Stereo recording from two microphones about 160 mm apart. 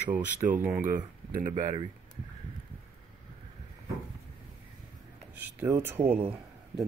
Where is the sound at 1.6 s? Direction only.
30° right (ahead or behind).